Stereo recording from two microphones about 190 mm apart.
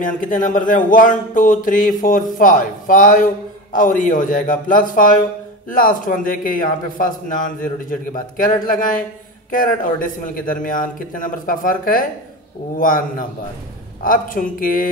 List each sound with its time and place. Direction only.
0.0 s a man's voice: 45° left (ahead or behind)